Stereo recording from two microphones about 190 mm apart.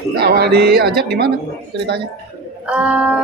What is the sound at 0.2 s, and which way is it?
Speech, 55° right (ahead or behind).